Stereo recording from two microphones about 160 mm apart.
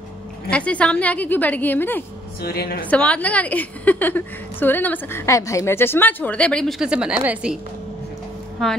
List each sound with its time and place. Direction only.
0.5 s a woman's voice: 10° left (ahead or behind)
2.4 s a woman's voice: 75° left (ahead or behind)
2.9 s a woman's voice: 10° left (ahead or behind)
8.6 s a woman's voice: centre (ahead or behind)